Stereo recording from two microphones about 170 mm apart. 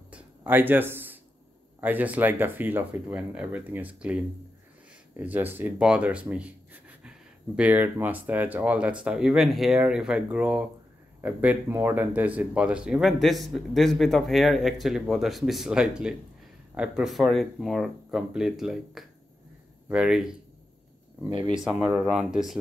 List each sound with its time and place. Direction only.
0.1 s a sound: 10° right (ahead or behind)
1.8 s speech: 10° right (ahead or behind)
21.3 s speech: 30° right (ahead or behind)
21.5 s speech: 5° right (ahead or behind)